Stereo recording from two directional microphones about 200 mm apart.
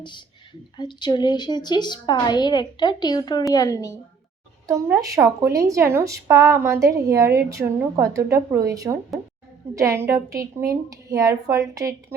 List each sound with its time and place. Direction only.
0.8 s a woman's voice: 20° left (ahead or behind)
4.6 s speech: 15° right (ahead or behind)